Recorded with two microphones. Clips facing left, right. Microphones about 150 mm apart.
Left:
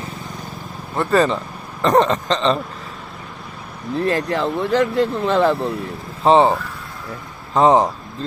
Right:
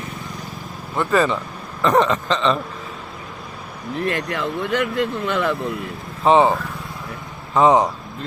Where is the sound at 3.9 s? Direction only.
35° left (ahead or behind).